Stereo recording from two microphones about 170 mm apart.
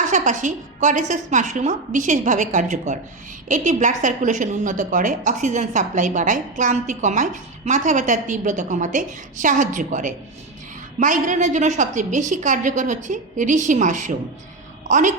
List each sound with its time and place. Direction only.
0.1 s a woman's voice: 45° right (ahead or behind)